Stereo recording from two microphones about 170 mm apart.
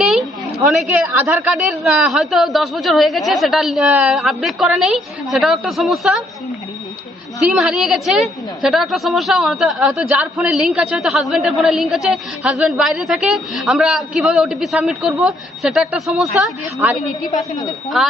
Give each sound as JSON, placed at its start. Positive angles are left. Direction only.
{"t": 0.0, "sound": "a woman's voice", "side_deg": -5}
{"t": 7.4, "sound": "a man's voice", "side_deg": -5}